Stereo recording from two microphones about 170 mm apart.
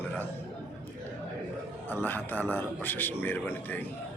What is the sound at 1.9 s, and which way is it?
A man's voice, 10° left (ahead or behind).